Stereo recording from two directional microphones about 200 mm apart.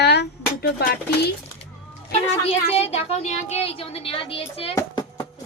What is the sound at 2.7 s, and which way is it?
A woman's voice, 30° left (ahead or behind).